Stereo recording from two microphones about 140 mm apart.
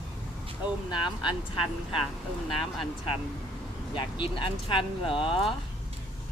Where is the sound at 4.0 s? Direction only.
35° left (ahead or behind).